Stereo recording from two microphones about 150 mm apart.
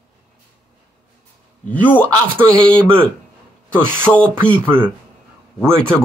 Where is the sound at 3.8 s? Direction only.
15° right (ahead or behind).